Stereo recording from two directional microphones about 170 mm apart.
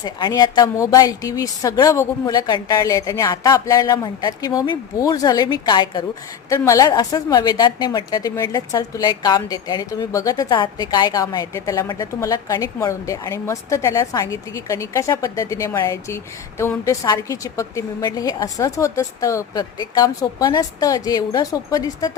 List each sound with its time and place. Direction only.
0.0 s a woman's voice: 25° left (ahead or behind)